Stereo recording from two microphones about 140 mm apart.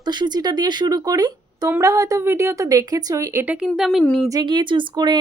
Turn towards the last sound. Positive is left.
turn(degrees=-30)  # may be behind; listen again after turning